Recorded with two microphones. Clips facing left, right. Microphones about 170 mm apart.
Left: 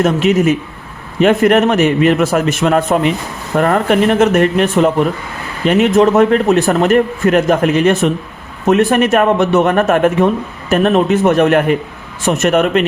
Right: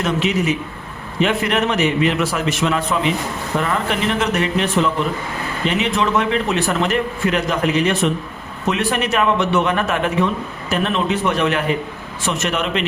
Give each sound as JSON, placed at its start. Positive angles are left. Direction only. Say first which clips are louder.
{"t": 0.0, "sound": "speech", "louder": "left 7 dB", "side_deg": 50}